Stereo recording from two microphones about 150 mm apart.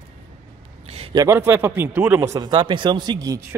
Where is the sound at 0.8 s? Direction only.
40° right (ahead or behind).